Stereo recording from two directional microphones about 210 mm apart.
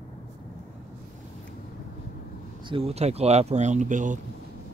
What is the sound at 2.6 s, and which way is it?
Speech, 25° right (ahead or behind).